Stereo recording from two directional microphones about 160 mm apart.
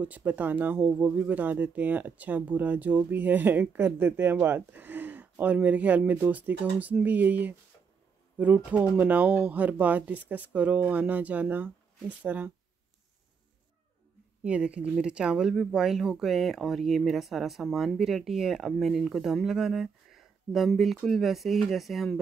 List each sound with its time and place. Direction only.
0.0 s speech: 10° right (ahead or behind)
14.4 s speech: 5° right (ahead or behind)